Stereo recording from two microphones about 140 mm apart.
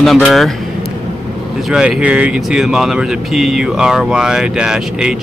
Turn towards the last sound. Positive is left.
turn(degrees=-5)  # may be behind; listen again after turning